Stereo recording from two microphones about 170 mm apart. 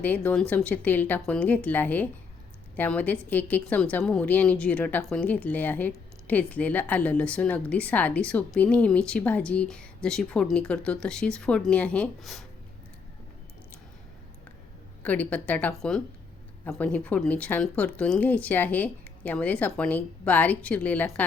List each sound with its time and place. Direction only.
0.0 s a woman's voice: 10° left (ahead or behind)
15.0 s a woman's voice: 10° left (ahead or behind)